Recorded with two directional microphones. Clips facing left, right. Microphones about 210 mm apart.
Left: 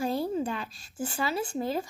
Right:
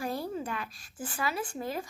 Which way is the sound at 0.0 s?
25° left (ahead or behind).